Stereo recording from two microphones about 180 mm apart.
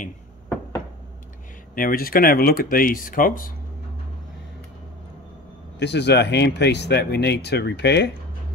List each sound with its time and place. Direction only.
1.8 s speech: 50° left (ahead or behind)
5.8 s speech: 70° left (ahead or behind)